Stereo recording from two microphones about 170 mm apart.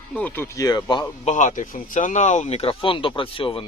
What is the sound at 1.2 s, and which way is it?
Speech, 45° left (ahead or behind).